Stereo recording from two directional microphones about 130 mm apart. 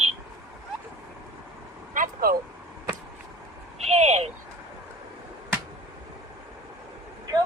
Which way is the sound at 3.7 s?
55° right (ahead or behind).